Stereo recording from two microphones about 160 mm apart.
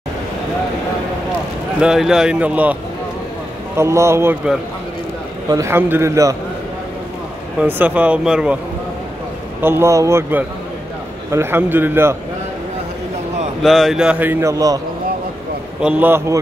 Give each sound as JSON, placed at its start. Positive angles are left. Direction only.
{"t": 1.8, "sound": "a man's voice", "side_deg": -5}
{"t": 5.5, "sound": "a man's voice", "side_deg": -15}
{"t": 7.6, "sound": "a man's voice", "side_deg": -10}
{"t": 9.6, "sound": "a man's voice", "side_deg": -15}
{"t": 13.6, "sound": "a man's voice", "side_deg": 0}
{"t": 15.8, "sound": "a man's voice", "side_deg": -10}